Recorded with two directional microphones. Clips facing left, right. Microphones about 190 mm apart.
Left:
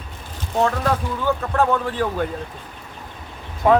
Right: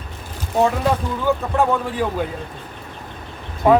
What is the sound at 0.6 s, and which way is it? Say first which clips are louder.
Speech: right 2 dB; 10° right (ahead or behind).